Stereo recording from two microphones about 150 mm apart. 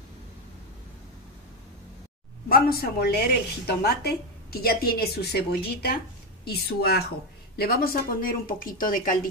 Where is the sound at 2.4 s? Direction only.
85° left.